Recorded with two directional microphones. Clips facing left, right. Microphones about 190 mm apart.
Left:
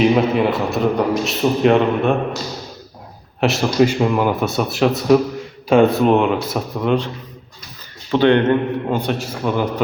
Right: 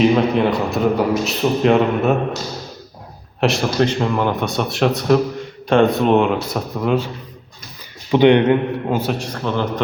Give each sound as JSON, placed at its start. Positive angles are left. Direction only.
{"t": 0.0, "sound": "a man's voice", "side_deg": 0}
{"t": 3.4, "sound": "a man's voice", "side_deg": 5}
{"t": 8.1, "sound": "a man's voice", "side_deg": -15}
{"t": 9.0, "sound": "a man's voice", "side_deg": 0}